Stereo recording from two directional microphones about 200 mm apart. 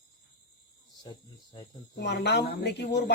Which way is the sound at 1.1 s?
20° left (ahead or behind).